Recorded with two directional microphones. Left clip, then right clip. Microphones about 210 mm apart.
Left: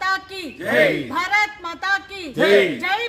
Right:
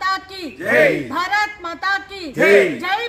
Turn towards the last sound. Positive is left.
turn(degrees=10)  # may be behind; listen again after turning